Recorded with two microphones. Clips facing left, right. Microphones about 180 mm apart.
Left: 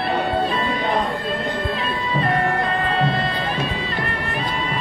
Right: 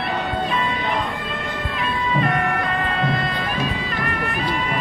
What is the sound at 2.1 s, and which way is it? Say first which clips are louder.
Music: even; 30° left (ahead or behind).